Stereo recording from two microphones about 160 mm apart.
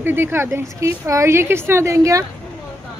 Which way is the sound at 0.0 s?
15° right (ahead or behind).